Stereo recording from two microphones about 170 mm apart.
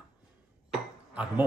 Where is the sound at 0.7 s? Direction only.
5° right (ahead or behind).